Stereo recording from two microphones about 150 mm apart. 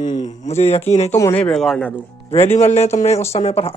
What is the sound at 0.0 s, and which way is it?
A man's voice, 45° left (ahead or behind).